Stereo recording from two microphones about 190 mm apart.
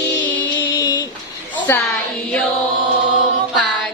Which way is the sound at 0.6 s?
25° left (ahead or behind).